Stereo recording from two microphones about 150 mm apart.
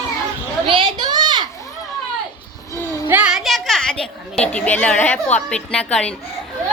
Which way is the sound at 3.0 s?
10° right (ahead or behind).